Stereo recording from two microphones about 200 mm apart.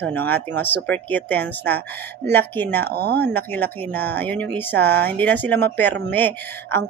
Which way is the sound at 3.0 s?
50° right (ahead or behind).